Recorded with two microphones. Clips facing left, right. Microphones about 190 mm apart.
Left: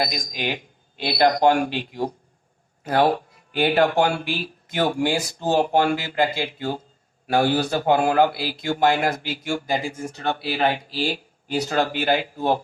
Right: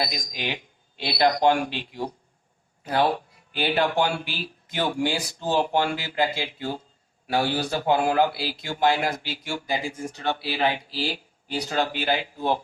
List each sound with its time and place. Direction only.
0.0 s a man's voice: 45° left (ahead or behind)